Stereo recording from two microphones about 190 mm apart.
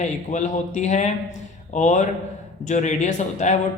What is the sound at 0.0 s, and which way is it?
Speech, 40° left (ahead or behind).